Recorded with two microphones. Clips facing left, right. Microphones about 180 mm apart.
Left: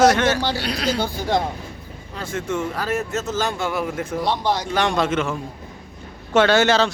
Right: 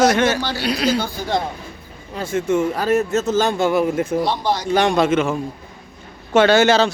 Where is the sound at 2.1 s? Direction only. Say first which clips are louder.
Right 6 dB; 10° right (ahead or behind).